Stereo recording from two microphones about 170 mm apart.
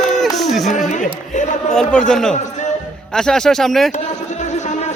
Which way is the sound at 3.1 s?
5° left (ahead or behind).